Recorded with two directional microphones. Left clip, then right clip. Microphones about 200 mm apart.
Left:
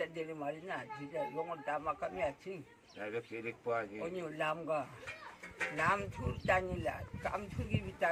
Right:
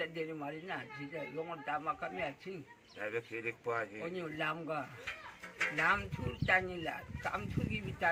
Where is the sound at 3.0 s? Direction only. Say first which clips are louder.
Right 2 dB; 20° left (ahead or behind).